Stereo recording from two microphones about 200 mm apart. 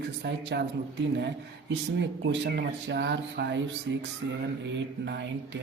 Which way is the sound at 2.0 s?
60° right (ahead or behind).